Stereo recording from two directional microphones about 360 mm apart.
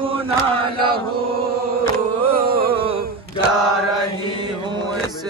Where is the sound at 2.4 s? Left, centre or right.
Right.